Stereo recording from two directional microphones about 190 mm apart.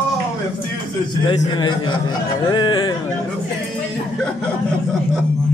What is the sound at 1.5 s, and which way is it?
Speech, 25° left (ahead or behind).